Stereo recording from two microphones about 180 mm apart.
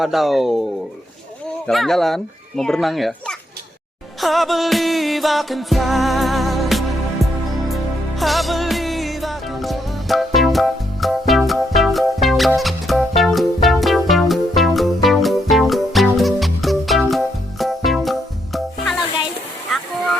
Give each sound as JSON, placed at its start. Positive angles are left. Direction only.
{"t": 0.0, "sound": "music", "side_deg": 0}
{"t": 1.6, "sound": "music", "side_deg": 0}